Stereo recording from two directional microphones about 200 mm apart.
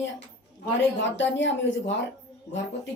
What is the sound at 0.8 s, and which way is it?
Speech, 65° left (ahead or behind).